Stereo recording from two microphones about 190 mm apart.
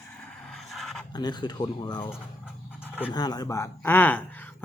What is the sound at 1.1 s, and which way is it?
A woman's voice, 20° left (ahead or behind).